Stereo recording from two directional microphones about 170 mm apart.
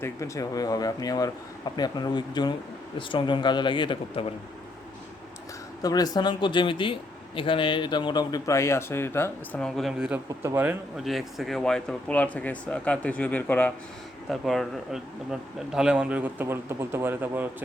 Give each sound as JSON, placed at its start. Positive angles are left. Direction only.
{"t": 0.0, "sound": "speech", "side_deg": 20}
{"t": 5.8, "sound": "speech", "side_deg": 20}
{"t": 11.0, "sound": "speech", "side_deg": 0}